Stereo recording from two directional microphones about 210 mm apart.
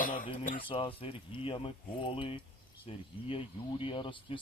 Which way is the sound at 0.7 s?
25° left (ahead or behind).